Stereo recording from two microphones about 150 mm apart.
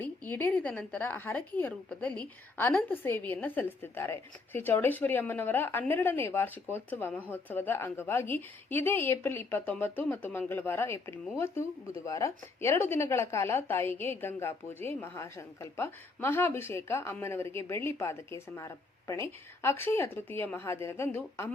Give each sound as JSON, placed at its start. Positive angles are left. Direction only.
{"t": 0.0, "sound": "speech", "side_deg": 10}